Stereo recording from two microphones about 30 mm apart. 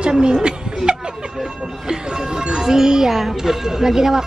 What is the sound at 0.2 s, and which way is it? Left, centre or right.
Speech, right.